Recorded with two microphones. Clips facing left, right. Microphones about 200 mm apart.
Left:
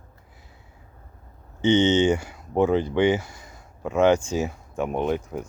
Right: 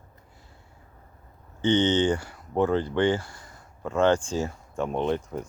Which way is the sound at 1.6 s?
25° left (ahead or behind).